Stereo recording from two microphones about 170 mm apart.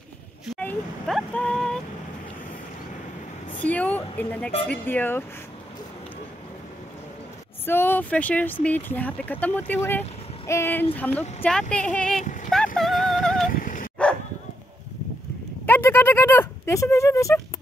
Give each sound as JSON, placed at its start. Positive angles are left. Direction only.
{"t": 0.6, "sound": "vehicle", "side_deg": 5}
{"t": 3.5, "sound": "speech", "side_deg": 10}
{"t": 7.6, "sound": "speech", "side_deg": 10}
{"t": 12.2, "sound": "a sound", "side_deg": 50}
{"t": 12.7, "sound": "yodeling", "side_deg": 0}
{"t": 13.5, "sound": "dog", "side_deg": 50}
{"t": 15.6, "sound": "a sound", "side_deg": 10}